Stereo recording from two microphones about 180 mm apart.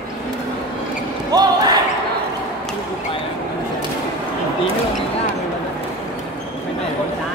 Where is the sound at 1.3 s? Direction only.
20° right (ahead or behind).